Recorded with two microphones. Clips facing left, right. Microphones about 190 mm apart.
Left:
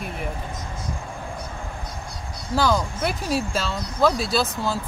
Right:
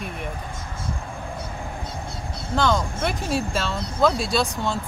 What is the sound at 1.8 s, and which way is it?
Vehicle, 25° right (ahead or behind).